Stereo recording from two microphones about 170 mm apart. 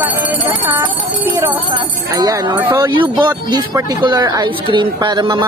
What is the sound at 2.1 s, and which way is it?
Speech, 25° right (ahead or behind).